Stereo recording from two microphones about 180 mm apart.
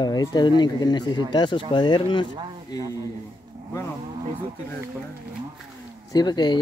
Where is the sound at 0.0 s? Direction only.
20° left (ahead or behind).